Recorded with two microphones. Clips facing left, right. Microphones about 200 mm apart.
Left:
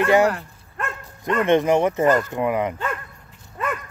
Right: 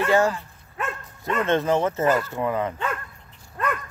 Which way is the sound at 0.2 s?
65° left (ahead or behind).